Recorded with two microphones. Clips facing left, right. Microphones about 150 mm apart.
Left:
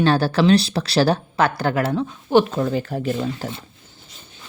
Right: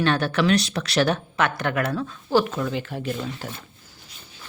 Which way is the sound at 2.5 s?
40° left (ahead or behind).